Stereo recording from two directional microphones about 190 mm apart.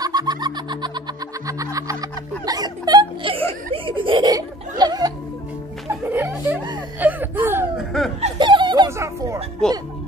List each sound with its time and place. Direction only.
0.0 s music: 20° right (ahead or behind)
2.4 s a sound: 20° right (ahead or behind)
3.7 s snicker: 25° right (ahead or behind)
5.9 s laughter: 10° right (ahead or behind)
8.2 s a sound: 25° right (ahead or behind)
9.6 s music: 5° left (ahead or behind)